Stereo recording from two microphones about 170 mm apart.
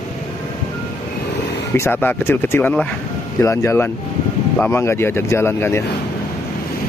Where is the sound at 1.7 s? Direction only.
10° left (ahead or behind).